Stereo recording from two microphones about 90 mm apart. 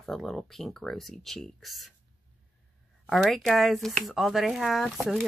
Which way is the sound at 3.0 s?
Centre (ahead or behind).